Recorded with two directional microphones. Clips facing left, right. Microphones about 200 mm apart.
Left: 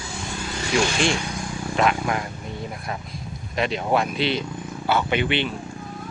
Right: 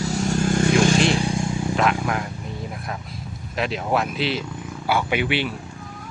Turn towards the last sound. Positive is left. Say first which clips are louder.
# even
turn(degrees=-5)  # may be behind; listen again after turning